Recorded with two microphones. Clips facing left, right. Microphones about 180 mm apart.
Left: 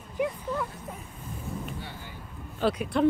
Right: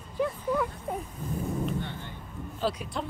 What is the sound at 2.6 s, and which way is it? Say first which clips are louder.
Speech: left 5 dB; 60° left (ahead or behind).